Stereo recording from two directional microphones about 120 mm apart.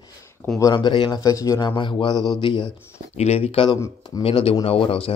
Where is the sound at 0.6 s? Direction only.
35° left (ahead or behind).